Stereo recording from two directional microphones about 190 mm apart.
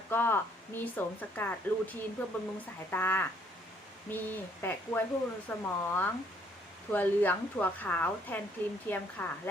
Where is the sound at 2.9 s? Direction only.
10° left (ahead or behind).